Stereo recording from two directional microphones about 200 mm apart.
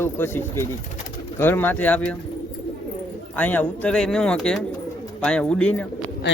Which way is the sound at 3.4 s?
10° left (ahead or behind).